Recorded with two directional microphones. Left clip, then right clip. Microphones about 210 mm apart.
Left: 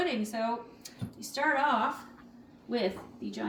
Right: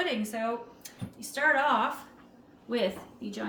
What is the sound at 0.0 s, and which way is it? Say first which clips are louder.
Speech: right 1 dB; 15° right (ahead or behind).